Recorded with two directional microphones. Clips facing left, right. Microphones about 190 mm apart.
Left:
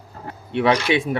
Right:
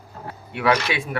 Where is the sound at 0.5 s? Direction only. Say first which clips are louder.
Left 3 dB; 25° left (ahead or behind).